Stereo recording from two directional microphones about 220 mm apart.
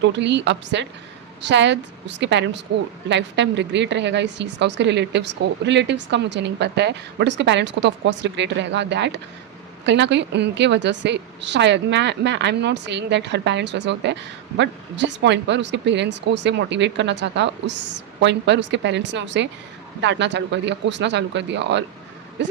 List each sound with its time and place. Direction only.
0.0 s a woman's voice: 55° right (ahead or behind)